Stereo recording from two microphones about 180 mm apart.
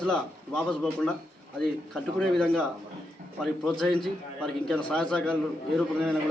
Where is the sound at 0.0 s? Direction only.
5° left (ahead or behind).